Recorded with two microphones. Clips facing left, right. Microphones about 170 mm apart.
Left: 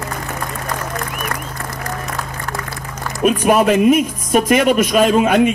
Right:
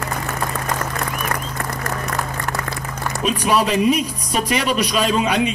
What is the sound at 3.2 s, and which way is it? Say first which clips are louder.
A man's voice: left 6 dB; 55° left (ahead or behind).